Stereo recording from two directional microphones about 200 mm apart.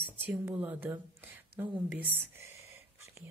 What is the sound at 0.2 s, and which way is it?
Speech, 5° right (ahead or behind).